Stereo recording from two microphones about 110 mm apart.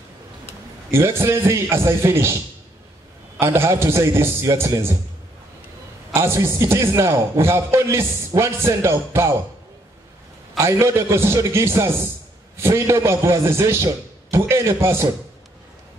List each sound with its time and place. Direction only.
0.9 s a man's voice: 25° right (ahead or behind)
3.3 s a man's voice: 25° right (ahead or behind)
6.1 s a man's voice: 25° right (ahead or behind)
10.6 s a man's voice: 25° right (ahead or behind)